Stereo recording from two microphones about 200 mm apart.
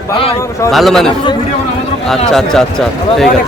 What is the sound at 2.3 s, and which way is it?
Speech, centre (ahead or behind).